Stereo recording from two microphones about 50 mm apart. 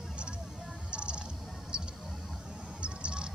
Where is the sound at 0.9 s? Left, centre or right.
Right.